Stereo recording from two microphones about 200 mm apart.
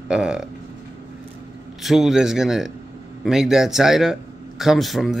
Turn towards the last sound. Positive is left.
turn(degrees=0)  # may be behind; listen again after turning